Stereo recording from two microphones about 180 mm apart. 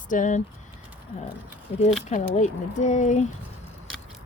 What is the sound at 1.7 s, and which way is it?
Speech, 35° left (ahead or behind).